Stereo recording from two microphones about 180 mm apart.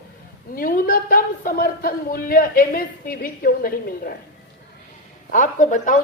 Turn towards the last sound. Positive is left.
turn(degrees=45)  # may be behind; listen again after turning